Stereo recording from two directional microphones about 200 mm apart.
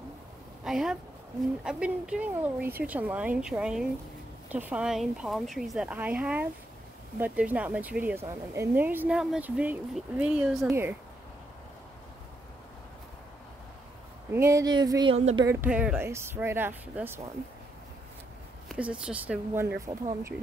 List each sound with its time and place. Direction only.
0.7 s speech: centre (ahead or behind)
14.3 s speech: 15° right (ahead or behind)
15.1 s speech: 30° right (ahead or behind)
15.4 s speech: 5° right (ahead or behind)
18.7 s speech: 5° right (ahead or behind)